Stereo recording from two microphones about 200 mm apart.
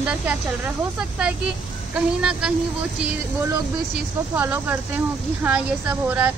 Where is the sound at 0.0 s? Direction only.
5° right (ahead or behind).